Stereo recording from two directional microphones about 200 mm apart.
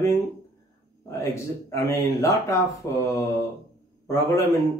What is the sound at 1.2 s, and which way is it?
Speech, 15° left (ahead or behind).